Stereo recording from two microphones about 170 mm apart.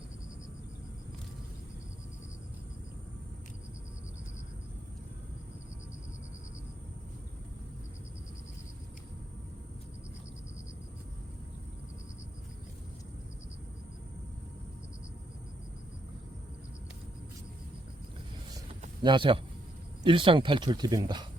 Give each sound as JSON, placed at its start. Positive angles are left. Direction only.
{"t": 19.0, "sound": "speech", "side_deg": -30}